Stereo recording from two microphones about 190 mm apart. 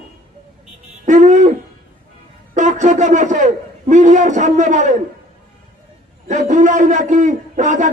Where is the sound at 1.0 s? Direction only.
40° right (ahead or behind).